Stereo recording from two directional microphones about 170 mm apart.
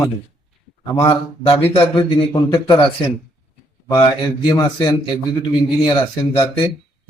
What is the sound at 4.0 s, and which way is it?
Speech, 25° left (ahead or behind).